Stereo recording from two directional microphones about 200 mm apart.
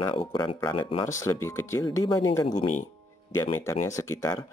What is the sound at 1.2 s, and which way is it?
Speech, 15° left (ahead or behind).